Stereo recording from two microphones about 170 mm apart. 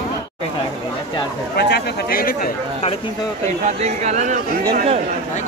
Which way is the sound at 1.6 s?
75° left (ahead or behind).